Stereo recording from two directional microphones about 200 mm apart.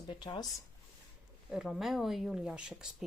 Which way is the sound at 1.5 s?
5° right (ahead or behind).